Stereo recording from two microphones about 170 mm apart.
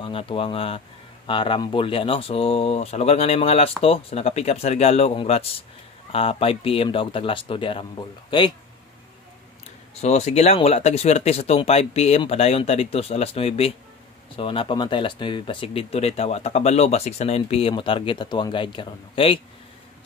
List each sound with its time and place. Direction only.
0.0 s speech: 30° left (ahead or behind)
9.9 s speech: 40° left (ahead or behind)